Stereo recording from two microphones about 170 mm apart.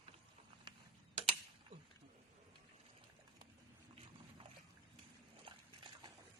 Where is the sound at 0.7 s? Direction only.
30° right (ahead or behind).